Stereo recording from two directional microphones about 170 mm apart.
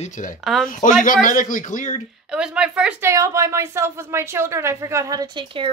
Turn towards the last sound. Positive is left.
turn(degrees=-30)  # may be behind; listen again after turning